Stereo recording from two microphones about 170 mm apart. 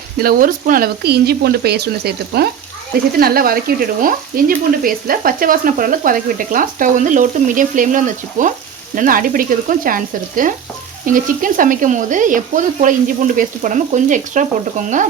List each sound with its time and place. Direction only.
0.2 s speech: 60° right (ahead or behind)